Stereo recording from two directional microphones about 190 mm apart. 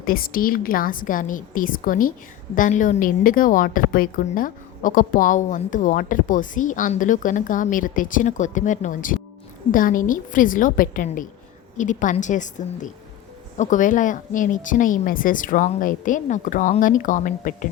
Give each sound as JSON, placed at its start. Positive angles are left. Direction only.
{"t": 0.0, "sound": "a woman's voice", "side_deg": 50}